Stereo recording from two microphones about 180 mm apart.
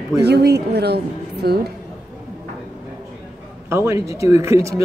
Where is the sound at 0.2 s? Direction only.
65° right (ahead or behind).